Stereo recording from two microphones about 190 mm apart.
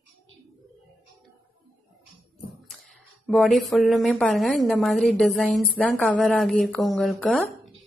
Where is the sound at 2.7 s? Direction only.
Centre (ahead or behind).